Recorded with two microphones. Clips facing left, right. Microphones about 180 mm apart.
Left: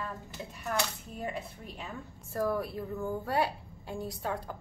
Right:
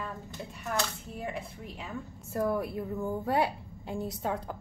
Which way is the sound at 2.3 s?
15° right (ahead or behind).